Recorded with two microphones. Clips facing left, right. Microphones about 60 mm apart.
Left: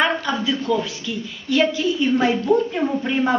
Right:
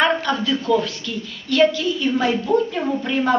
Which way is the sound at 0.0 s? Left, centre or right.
Centre.